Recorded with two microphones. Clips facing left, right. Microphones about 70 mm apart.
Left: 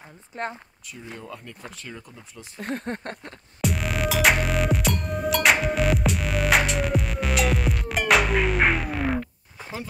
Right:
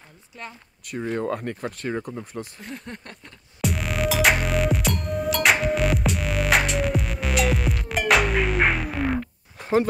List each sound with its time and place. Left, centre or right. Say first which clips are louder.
0.3 s speech: left 8 dB; left
0.8 s speech: right 13 dB; right
2.6 s speech: left 7 dB; left
3.6 s music: right 1 dB; centre
9.6 s a sound: right 14 dB; right